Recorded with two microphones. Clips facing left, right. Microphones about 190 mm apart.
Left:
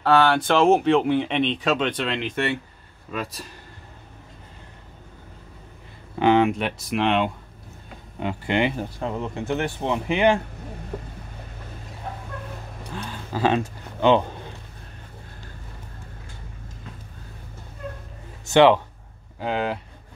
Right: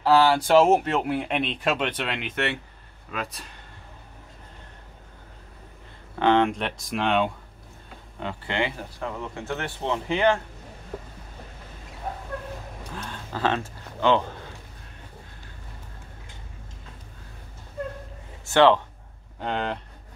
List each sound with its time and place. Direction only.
0.0 s speech: 5° right (ahead or behind)
6.1 s speech: 10° left (ahead or behind)
8.2 s speech: 15° left (ahead or behind)
12.9 s a sound: centre (ahead or behind)
13.3 s speech: 10° left (ahead or behind)
18.4 s speech: 15° left (ahead or behind)
19.4 s speech: 5° left (ahead or behind)